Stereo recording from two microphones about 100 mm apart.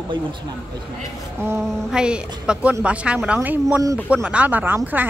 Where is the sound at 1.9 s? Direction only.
10° right (ahead or behind).